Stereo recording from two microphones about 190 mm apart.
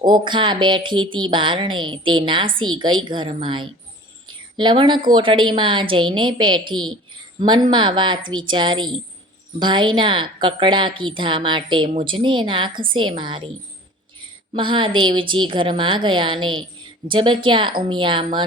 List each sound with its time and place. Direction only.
0.0 s a woman's voice: 25° right (ahead or behind)
4.3 s a sound: 25° right (ahead or behind)
5.1 s a woman's voice: 25° right (ahead or behind)
14.5 s a woman's voice: 25° right (ahead or behind)